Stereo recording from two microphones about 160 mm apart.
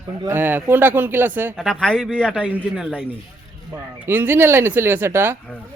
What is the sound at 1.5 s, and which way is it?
Speech, 5° left (ahead or behind).